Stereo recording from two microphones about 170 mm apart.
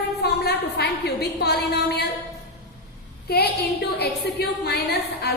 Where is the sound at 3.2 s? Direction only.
70° left (ahead or behind).